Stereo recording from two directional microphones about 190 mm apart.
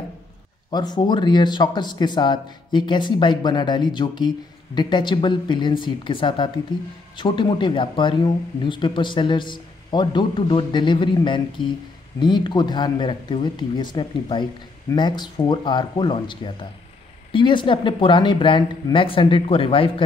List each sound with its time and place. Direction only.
0.7 s speech: 20° left (ahead or behind)